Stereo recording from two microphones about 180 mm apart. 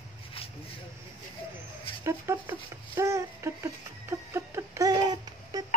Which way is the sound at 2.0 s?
15° right (ahead or behind).